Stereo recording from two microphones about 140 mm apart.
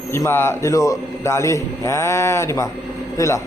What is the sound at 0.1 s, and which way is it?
A man's voice, 15° left (ahead or behind).